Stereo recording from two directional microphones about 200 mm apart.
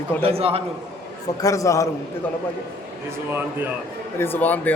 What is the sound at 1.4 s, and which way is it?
Speech, 15° left (ahead or behind).